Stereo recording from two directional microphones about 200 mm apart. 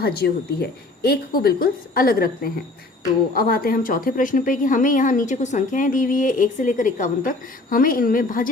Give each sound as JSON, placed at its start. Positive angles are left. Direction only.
{"t": 0.0, "sound": "a woman's voice", "side_deg": 50}